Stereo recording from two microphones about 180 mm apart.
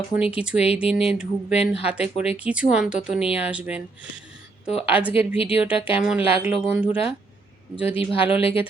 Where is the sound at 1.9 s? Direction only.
5° right (ahead or behind).